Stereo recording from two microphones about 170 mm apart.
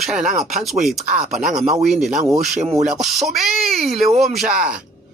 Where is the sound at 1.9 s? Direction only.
Centre (ahead or behind).